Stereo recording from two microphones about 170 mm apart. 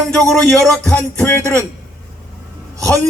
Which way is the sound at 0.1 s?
5° left (ahead or behind).